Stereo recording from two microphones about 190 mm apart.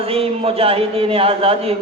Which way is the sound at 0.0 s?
30° right (ahead or behind).